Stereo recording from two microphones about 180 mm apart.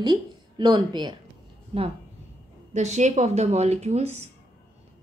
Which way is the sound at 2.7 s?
40° right (ahead or behind).